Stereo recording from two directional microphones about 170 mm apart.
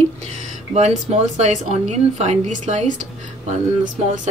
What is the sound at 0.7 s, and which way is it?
Speech, 40° right (ahead or behind).